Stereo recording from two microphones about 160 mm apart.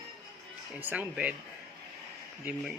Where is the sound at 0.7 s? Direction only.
10° right (ahead or behind).